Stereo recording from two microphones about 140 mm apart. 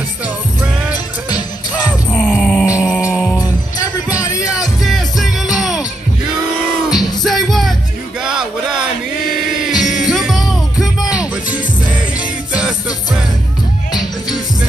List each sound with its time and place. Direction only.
2.1 s music: 5° left (ahead or behind)
2.6 s music: 5° right (ahead or behind)
3.8 s music: 25° left (ahead or behind)
4.5 s music: centre (ahead or behind)
6.9 s music: centre (ahead or behind)
9.7 s music: centre (ahead or behind)